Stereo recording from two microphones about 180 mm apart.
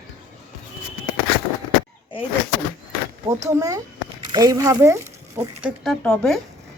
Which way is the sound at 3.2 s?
15° right (ahead or behind).